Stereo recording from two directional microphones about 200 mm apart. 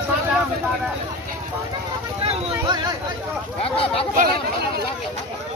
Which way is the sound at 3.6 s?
30° left (ahead or behind).